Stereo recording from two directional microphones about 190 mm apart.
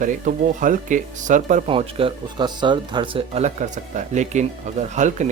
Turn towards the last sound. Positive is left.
turn(degrees=-40)  # may be behind; listen again after turning